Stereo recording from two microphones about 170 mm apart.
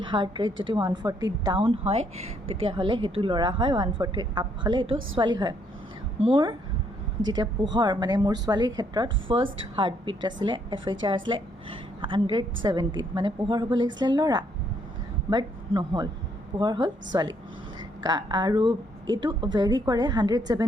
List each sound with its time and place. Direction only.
0.0 s a woman's voice: 30° right (ahead or behind)